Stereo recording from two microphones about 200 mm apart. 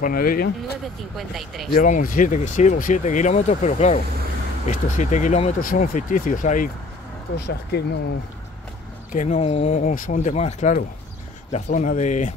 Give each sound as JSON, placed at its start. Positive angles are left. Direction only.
{"t": 0.0, "sound": "speech", "side_deg": 45}
{"t": 1.1, "sound": "speech", "side_deg": 0}
{"t": 1.7, "sound": "speech", "side_deg": 40}
{"t": 7.3, "sound": "speech", "side_deg": 55}
{"t": 9.1, "sound": "speech", "side_deg": 40}